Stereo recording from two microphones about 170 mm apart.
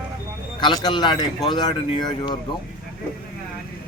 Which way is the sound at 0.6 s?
25° left (ahead or behind).